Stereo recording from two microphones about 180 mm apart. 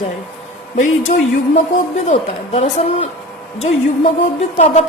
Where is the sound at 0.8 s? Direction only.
45° left (ahead or behind).